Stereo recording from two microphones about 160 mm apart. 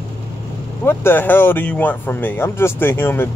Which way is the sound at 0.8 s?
10° left (ahead or behind).